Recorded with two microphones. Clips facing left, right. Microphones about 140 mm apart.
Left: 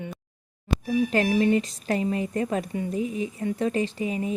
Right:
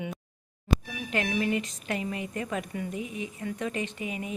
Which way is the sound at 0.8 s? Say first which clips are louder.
Left 9 dB; 35° left (ahead or behind).